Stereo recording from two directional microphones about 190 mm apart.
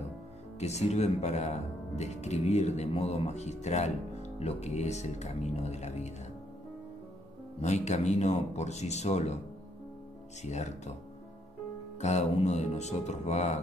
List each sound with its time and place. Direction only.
0.6 s speech: 35° left (ahead or behind)
7.6 s speech: 35° left (ahead or behind)
10.4 s speech: 35° left (ahead or behind)
12.0 s speech: 35° left (ahead or behind)